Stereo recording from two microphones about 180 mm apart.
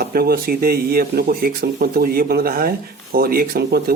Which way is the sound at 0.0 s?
55° right (ahead or behind).